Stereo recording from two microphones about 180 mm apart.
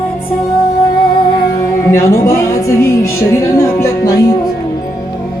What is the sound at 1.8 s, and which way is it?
Music, 15° left (ahead or behind).